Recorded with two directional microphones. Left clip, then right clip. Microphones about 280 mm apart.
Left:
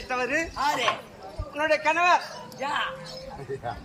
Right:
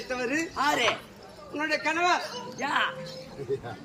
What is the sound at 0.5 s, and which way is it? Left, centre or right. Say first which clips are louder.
Speech: right 4 dB; centre.